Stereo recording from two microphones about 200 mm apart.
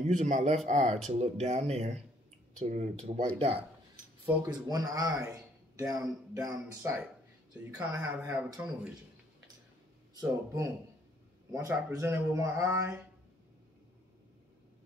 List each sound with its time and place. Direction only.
0.0 s speech: 35° right (ahead or behind)
4.5 s a man's voice: 20° right (ahead or behind)
8.4 s speech: 5° right (ahead or behind)
10.1 s a man's voice: 15° right (ahead or behind)